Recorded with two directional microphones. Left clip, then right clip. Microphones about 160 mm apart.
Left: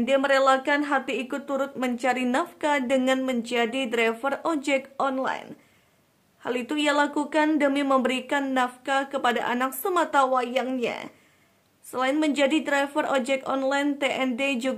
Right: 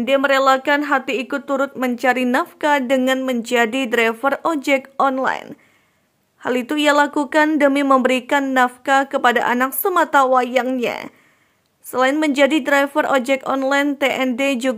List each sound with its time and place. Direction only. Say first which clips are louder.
0.0 s speech: right 6 dB; 30° right (ahead or behind)